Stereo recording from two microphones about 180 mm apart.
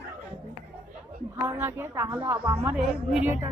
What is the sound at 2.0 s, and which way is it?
Speech, 25° right (ahead or behind).